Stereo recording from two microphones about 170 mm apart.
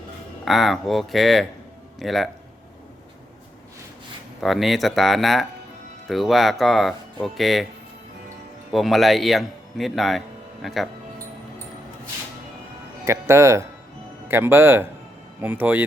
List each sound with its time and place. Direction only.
0.4 s speech: centre (ahead or behind)
4.4 s speech: centre (ahead or behind)
8.7 s a man's voice: centre (ahead or behind)
13.1 s speech: 15° right (ahead or behind)